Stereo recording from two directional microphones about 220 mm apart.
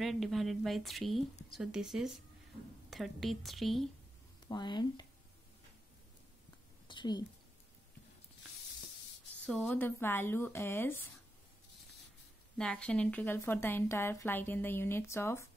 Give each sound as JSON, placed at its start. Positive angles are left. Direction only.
{"t": 0.0, "sound": "a woman's voice", "side_deg": 0}
{"t": 4.5, "sound": "speech", "side_deg": 20}
{"t": 6.9, "sound": "a sound", "side_deg": 20}
{"t": 9.5, "sound": "a woman's voice", "side_deg": 0}
{"t": 12.5, "sound": "a woman's voice", "side_deg": 5}